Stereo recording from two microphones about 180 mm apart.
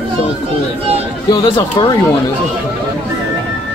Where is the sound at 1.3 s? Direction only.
25° left (ahead or behind).